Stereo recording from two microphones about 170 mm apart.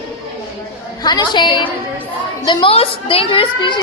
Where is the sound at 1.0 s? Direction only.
25° left (ahead or behind).